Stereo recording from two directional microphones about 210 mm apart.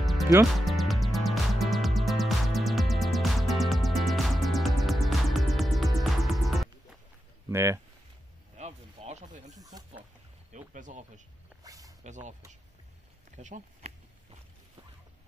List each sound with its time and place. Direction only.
0.0 s music: centre (ahead or behind)
7.4 s speech: 15° right (ahead or behind)
8.5 s a sound: 30° right (ahead or behind)
10.5 s speech: 35° right (ahead or behind)
11.6 s a sound: 15° right (ahead or behind)
12.0 s speech: 35° right (ahead or behind)
13.4 s speech: 35° right (ahead or behind)